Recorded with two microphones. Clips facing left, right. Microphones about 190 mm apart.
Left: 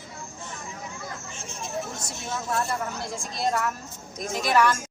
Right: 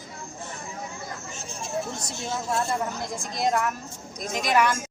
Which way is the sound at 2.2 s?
30° right (ahead or behind).